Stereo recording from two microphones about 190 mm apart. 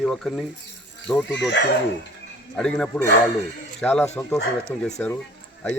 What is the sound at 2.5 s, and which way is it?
A man's voice, 5° left (ahead or behind).